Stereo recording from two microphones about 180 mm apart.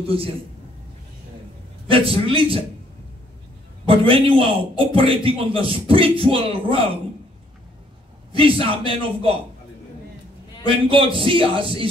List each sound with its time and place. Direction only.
0.1 s a man's voice: 30° right (ahead or behind)
1.9 s a man's voice: 30° right (ahead or behind)
3.8 s a man's voice: 30° right (ahead or behind)
8.3 s a man's voice: 30° right (ahead or behind)
10.9 s a man's voice: 30° right (ahead or behind)